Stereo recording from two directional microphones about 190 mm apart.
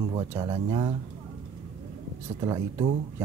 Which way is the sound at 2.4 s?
20° right (ahead or behind).